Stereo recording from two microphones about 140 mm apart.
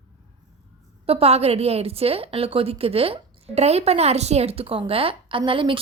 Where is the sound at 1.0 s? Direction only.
45° right (ahead or behind).